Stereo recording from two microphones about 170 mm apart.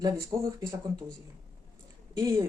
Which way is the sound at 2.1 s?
20° right (ahead or behind).